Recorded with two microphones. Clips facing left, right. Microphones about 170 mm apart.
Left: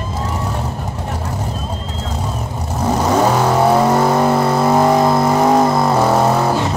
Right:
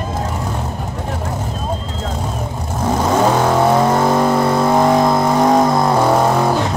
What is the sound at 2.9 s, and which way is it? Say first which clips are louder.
Vehicle: even; 10° left (ahead or behind).